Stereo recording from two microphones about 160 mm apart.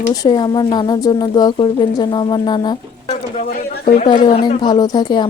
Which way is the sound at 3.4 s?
75° left (ahead or behind).